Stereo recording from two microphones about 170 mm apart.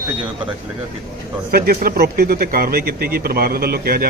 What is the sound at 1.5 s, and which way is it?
Speech, 60° right (ahead or behind).